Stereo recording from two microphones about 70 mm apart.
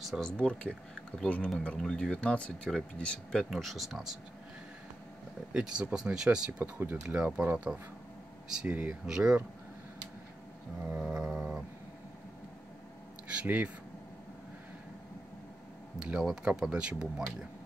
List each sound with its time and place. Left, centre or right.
0.0 s speech: centre
0.4 s speech: centre
3.4 s speech: centre
5.5 s speech: centre
6.6 s speech: right
7.2 s speech: centre
9.0 s speech: centre
10.8 s speech: centre
13.3 s speech: centre
16.0 s speech: centre